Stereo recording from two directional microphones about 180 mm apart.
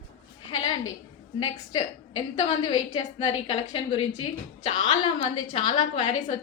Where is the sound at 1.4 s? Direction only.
30° left (ahead or behind).